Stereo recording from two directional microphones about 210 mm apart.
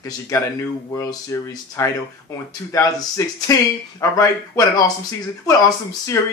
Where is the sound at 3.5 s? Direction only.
15° left (ahead or behind).